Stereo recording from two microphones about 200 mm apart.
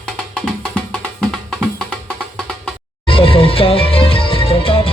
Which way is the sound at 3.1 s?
25° left (ahead or behind).